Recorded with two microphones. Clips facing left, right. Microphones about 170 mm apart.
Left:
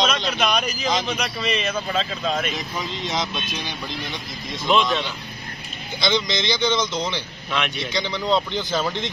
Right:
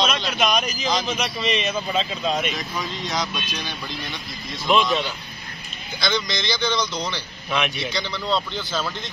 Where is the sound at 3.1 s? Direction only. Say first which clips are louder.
Left 1 dB; 20° left (ahead or behind).